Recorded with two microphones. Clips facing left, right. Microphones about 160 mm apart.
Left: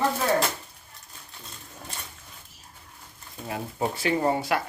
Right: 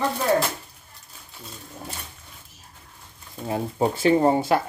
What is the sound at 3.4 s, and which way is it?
Speech, 30° right (ahead or behind).